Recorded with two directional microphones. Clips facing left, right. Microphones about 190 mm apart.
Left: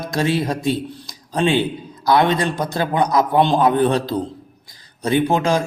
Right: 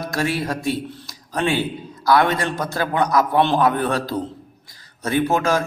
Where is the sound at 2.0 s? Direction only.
20° left (ahead or behind).